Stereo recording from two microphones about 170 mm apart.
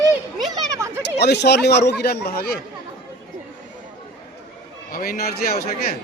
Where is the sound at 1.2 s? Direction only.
80° left; by 2.5 s 65° left (ahead or behind).